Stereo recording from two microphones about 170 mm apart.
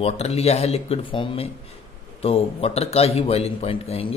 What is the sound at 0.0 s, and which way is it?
A man's voice, 40° left (ahead or behind).